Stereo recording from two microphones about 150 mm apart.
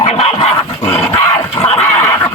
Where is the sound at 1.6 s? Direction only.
10° left (ahead or behind).